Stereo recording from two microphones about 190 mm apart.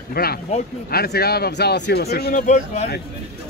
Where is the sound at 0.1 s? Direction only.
55° left (ahead or behind).